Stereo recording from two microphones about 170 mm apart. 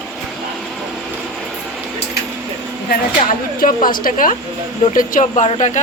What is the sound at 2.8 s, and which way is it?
A woman's voice, 55° left (ahead or behind).